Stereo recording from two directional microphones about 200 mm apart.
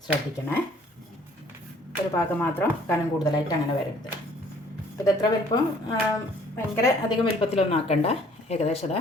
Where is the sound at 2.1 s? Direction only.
10° left (ahead or behind).